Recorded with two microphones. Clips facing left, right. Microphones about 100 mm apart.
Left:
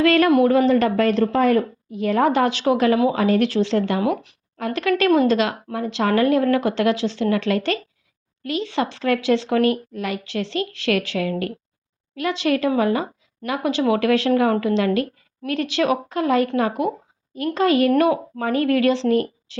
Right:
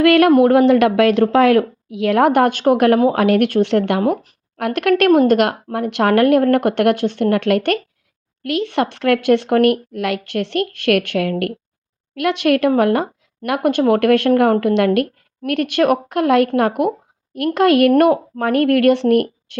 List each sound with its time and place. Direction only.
0.0 s a woman's voice: 60° right (ahead or behind)
4.0 s speech: 40° right (ahead or behind)
4.5 s speech: 65° right (ahead or behind)